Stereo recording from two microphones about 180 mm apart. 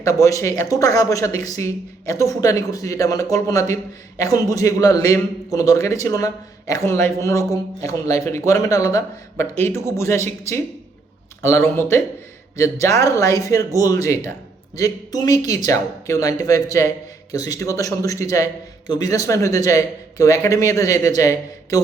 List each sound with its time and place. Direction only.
0.0 s a man's voice: 20° left (ahead or behind)